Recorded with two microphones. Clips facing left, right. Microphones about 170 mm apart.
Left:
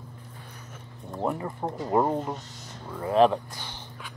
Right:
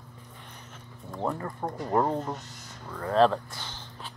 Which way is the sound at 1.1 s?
15° left (ahead or behind).